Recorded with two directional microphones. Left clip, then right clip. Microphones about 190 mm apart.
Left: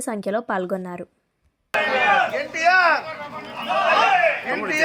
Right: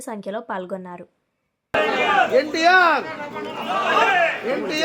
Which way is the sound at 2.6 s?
45° right (ahead or behind).